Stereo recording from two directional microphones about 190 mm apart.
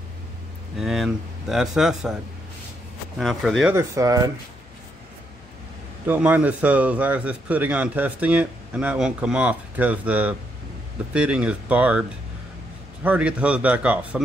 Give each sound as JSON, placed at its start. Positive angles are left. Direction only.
{"t": 0.7, "sound": "speech", "side_deg": 0}
{"t": 3.2, "sound": "speech", "side_deg": 0}
{"t": 3.7, "sound": "a man's voice", "side_deg": -15}
{"t": 6.0, "sound": "a man's voice", "side_deg": -10}
{"t": 13.0, "sound": "a man's voice", "side_deg": -5}